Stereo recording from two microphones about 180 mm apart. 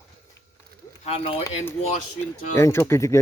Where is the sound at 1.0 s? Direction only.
35° left (ahead or behind).